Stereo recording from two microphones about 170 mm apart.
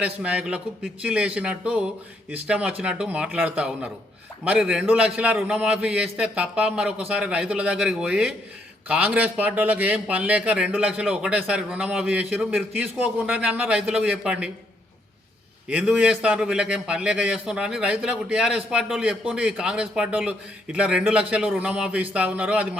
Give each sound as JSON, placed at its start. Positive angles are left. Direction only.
{"t": 0.0, "sound": "a man's voice", "side_deg": -5}
{"t": 15.7, "sound": "a man's voice", "side_deg": -5}